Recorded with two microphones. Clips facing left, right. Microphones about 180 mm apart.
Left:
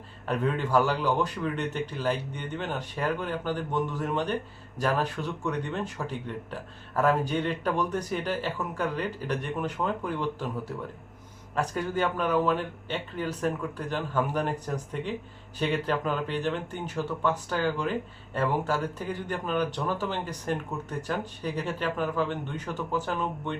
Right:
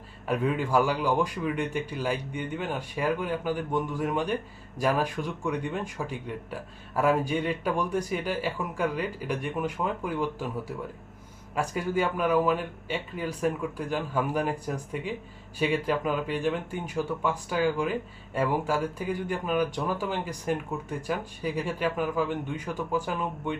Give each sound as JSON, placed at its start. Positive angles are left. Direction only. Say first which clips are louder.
{"t": 0.3, "sound": "speech", "louder": "right 1 dB", "side_deg": -10}